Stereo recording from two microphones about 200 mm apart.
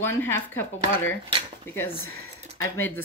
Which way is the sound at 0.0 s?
10° left (ahead or behind).